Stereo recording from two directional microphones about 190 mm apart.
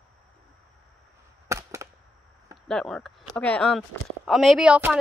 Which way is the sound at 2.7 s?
5° left (ahead or behind).